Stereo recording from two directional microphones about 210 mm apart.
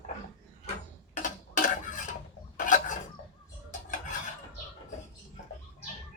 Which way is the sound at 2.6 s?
40° left (ahead or behind).